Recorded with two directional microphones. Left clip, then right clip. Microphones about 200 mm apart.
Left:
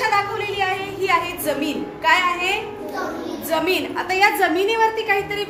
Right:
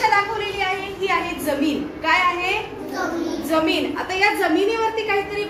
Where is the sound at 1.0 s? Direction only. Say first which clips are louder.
Left 2 dB; 40° left (ahead or behind).